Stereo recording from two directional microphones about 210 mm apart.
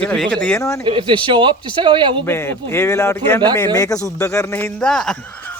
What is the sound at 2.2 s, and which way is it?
Speech, 10° left (ahead or behind).